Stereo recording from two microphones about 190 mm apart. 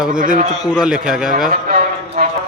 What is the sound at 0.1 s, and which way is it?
Speech, 45° right (ahead or behind).